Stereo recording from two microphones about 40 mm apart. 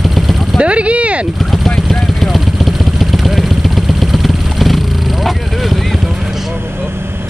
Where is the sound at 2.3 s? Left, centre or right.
Centre.